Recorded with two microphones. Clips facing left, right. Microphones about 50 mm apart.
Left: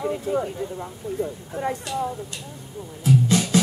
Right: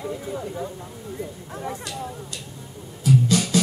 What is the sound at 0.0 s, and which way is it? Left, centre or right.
Speech, left.